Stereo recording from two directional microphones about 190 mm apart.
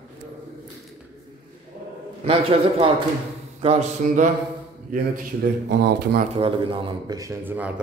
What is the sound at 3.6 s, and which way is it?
Speech, 35° right (ahead or behind).